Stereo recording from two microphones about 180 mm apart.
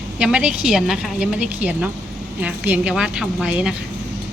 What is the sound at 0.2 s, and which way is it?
A woman's voice, 5° right (ahead or behind).